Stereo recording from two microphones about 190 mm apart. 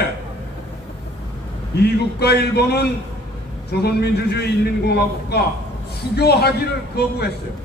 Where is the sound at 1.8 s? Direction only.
60° left (ahead or behind).